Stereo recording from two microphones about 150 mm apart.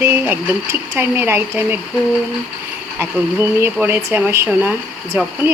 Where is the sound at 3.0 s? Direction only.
15° right (ahead or behind).